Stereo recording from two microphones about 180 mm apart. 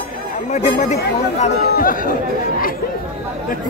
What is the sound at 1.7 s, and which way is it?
Speech, 50° left (ahead or behind).